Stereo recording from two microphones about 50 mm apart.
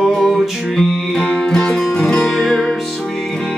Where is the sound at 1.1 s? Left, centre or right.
Centre.